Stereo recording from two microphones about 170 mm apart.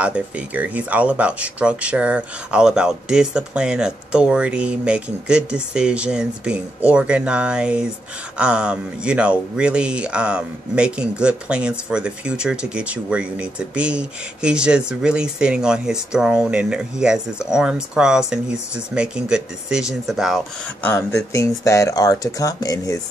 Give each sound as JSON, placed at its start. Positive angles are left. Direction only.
{"t": 0.0, "sound": "speech", "side_deg": -10}
{"t": 20.8, "sound": "speech", "side_deg": 15}